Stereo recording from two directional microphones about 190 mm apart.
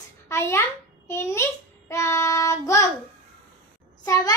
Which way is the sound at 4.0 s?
20° left (ahead or behind).